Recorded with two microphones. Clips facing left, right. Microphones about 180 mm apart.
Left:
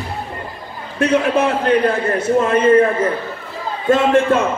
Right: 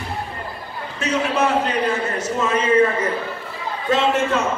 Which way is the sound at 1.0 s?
55° left (ahead or behind).